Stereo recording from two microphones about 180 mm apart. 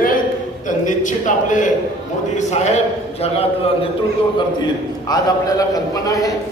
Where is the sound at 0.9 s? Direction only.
45° left (ahead or behind).